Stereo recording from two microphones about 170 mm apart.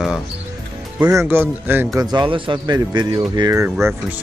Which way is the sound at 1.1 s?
10° right (ahead or behind).